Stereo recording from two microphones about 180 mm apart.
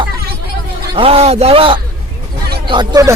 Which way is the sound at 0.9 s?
30° right (ahead or behind).